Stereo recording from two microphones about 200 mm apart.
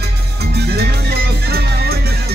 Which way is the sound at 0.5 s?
55° right (ahead or behind).